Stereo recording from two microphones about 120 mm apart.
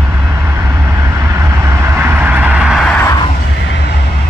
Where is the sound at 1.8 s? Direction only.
20° right (ahead or behind).